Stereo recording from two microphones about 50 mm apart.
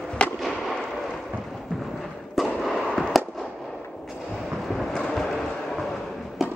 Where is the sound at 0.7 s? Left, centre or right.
Centre.